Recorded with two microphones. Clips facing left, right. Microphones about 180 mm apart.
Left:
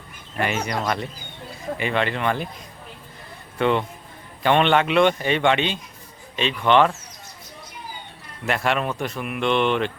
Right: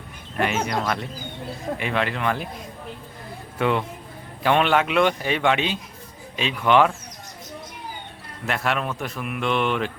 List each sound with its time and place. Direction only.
0.3 s a man's voice: centre (ahead or behind)
3.6 s a man's voice: 5° right (ahead or behind)
8.4 s a man's voice: centre (ahead or behind)